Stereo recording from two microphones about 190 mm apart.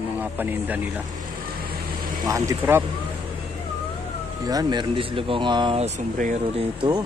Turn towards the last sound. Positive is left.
turn(degrees=-30)  # may be behind; listen again after turning